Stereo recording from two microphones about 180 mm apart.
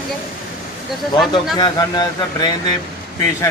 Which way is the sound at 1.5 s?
20° left (ahead or behind).